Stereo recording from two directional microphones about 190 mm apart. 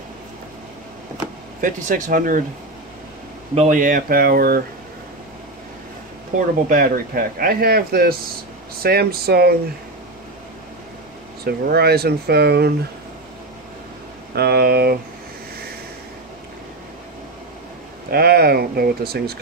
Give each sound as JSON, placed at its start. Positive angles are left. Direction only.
{"t": 1.6, "sound": "speech", "side_deg": -45}
{"t": 3.5, "sound": "speech", "side_deg": -40}
{"t": 6.3, "sound": "speech", "side_deg": -50}
{"t": 11.4, "sound": "speech", "side_deg": -55}
{"t": 14.3, "sound": "speech", "side_deg": -60}
{"t": 18.1, "sound": "speech", "side_deg": -55}